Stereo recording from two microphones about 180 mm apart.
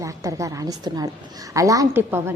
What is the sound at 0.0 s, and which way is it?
A woman's voice, 15° right (ahead or behind).